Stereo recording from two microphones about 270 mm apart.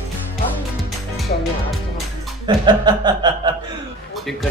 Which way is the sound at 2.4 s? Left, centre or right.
Centre.